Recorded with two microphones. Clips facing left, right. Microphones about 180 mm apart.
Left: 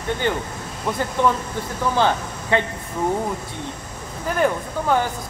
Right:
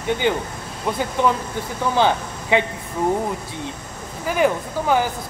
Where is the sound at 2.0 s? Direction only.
10° right (ahead or behind).